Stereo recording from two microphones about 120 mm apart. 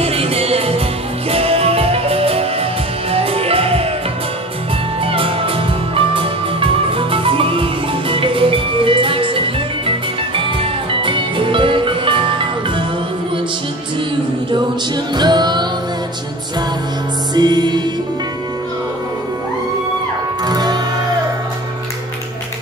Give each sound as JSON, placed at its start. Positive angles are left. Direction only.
{"t": 0.0, "sound": "music", "side_deg": -55}
{"t": 5.0, "sound": "music", "side_deg": -50}
{"t": 15.1, "sound": "music", "side_deg": -40}
{"t": 17.3, "sound": "music", "side_deg": -35}
{"t": 20.4, "sound": "music", "side_deg": -35}